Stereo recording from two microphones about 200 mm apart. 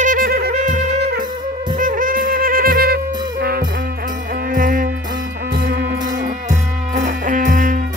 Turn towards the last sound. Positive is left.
turn(degrees=-40)  # may be behind; listen again after turning